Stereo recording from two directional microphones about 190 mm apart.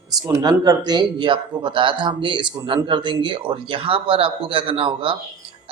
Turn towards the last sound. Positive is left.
turn(degrees=-30)  # may be behind; listen again after turning